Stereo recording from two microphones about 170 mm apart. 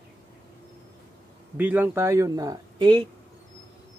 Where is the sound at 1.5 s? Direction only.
10° right (ahead or behind); by 3.0 s 30° right (ahead or behind).